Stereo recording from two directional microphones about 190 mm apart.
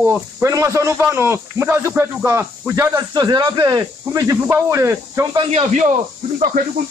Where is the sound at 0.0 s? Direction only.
10° right (ahead or behind).